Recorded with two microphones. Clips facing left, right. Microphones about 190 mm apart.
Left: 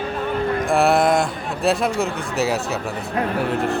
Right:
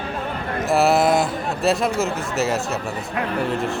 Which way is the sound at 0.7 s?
Centre (ahead or behind).